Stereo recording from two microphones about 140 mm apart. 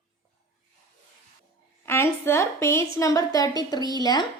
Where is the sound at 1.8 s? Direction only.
20° left (ahead or behind).